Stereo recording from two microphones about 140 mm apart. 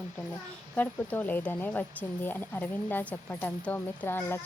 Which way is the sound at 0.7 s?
10° left (ahead or behind).